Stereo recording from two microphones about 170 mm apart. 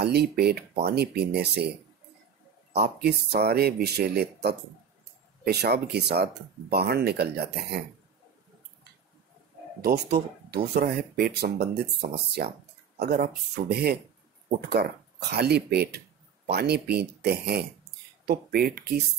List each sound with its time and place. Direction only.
0.0 s speech: 75° right (ahead or behind)
3.0 s speech: 70° right (ahead or behind)
9.8 s speech: 70° right (ahead or behind)
13.1 s speech: 65° right (ahead or behind)